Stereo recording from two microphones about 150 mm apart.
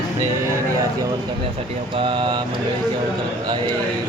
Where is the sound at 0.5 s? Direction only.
20° right (ahead or behind).